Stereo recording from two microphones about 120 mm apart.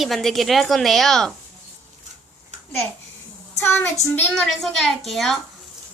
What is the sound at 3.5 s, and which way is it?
Speech, 20° left (ahead or behind).